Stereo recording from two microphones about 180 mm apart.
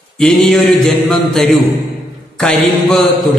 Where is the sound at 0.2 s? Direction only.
Centre (ahead or behind).